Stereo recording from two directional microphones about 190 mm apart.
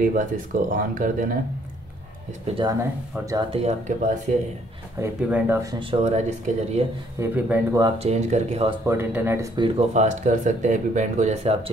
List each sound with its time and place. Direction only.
0.0 s speech: 45° right (ahead or behind)
2.4 s speech: 30° right (ahead or behind)
2.8 s speech: 15° right (ahead or behind)
3.5 s speech: 35° right (ahead or behind)
5.0 s speech: 10° right (ahead or behind); by 6.8 s 35° right (ahead or behind)
7.2 s speech: 10° right (ahead or behind)
8.0 s speech: 35° right (ahead or behind)
8.8 s speech: 10° right (ahead or behind)
9.6 s speech: 35° right (ahead or behind)